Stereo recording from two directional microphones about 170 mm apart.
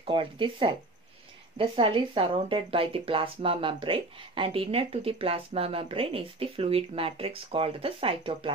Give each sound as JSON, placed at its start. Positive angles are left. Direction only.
{"t": 0.0, "sound": "speech", "side_deg": -30}